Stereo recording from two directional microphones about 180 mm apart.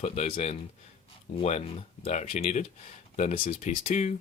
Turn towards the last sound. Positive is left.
turn(degrees=40)  # may be behind; listen again after turning